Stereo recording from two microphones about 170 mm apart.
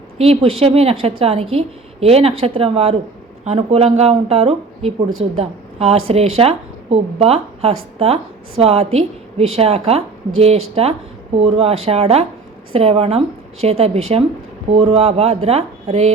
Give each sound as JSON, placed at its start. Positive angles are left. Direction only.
{"t": 0.2, "sound": "speech", "side_deg": -35}